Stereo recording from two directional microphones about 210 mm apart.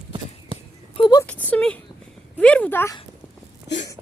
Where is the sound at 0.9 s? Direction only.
20° left (ahead or behind).